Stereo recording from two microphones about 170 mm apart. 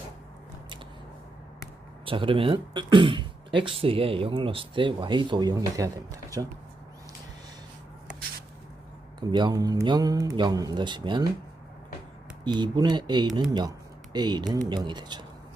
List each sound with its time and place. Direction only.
2.0 s speech: 30° right (ahead or behind)
9.3 s speech: 25° right (ahead or behind)
12.5 s speech: 25° right (ahead or behind)